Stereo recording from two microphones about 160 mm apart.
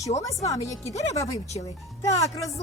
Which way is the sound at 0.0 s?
20° left (ahead or behind).